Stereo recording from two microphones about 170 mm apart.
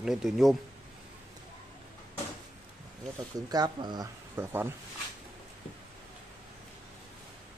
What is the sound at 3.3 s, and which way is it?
Speech, 20° right (ahead or behind).